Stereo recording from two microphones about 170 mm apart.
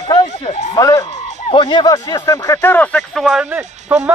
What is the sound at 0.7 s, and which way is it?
Speech, 20° left (ahead or behind).